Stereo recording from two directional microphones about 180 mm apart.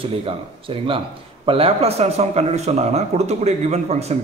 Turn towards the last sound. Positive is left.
turn(degrees=-35)  # may be behind; listen again after turning